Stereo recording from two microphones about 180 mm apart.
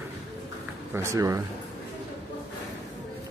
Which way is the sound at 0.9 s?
15° right (ahead or behind).